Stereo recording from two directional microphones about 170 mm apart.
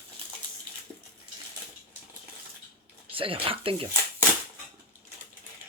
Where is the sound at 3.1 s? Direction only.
30° right (ahead or behind).